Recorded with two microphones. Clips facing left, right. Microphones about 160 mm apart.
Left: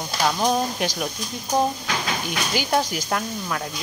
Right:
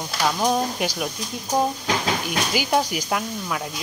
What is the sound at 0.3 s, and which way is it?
Speech, 5° right (ahead or behind).